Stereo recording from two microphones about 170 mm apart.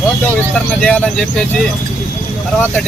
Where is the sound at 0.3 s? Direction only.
5° left (ahead or behind).